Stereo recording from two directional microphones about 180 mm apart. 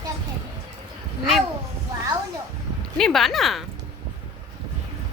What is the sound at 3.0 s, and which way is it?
Speech, centre (ahead or behind).